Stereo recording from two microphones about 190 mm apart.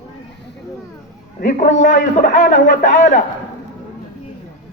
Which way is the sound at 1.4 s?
40° left (ahead or behind).